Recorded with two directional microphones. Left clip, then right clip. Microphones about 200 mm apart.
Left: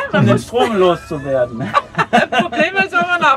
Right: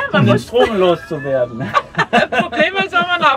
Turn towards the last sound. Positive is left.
turn(degrees=0)  # may be behind; listen again after turning